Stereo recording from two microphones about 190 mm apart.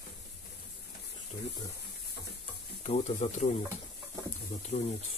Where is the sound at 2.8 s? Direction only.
35° left (ahead or behind).